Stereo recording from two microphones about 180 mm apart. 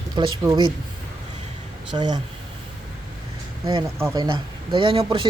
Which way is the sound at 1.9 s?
25° right (ahead or behind).